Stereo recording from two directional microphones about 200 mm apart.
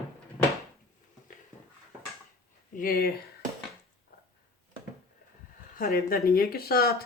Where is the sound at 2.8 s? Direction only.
45° left (ahead or behind).